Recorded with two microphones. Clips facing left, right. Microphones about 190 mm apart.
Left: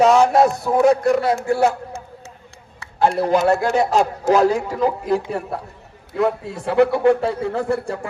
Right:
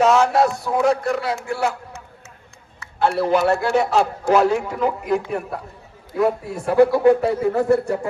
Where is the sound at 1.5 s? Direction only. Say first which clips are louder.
Left 6 dB; 20° left (ahead or behind).